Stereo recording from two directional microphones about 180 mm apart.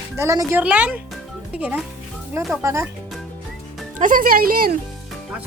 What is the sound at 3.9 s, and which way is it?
Speech, 45° right (ahead or behind).